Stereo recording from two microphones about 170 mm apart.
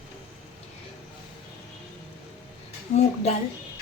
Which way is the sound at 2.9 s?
40° left (ahead or behind).